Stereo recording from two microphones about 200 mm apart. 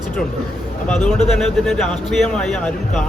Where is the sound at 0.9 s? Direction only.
5° left (ahead or behind).